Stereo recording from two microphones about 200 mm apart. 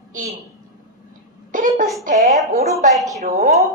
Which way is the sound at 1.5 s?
40° right (ahead or behind).